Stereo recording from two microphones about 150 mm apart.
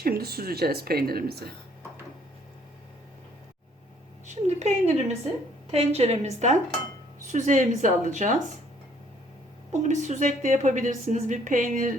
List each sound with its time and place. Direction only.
0.0 s speech: 90° right
4.4 s a woman's voice: 50° right (ahead or behind)
9.7 s a woman's voice: 55° right (ahead or behind)